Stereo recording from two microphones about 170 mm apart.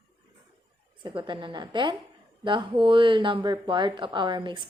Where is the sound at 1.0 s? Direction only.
30° right (ahead or behind).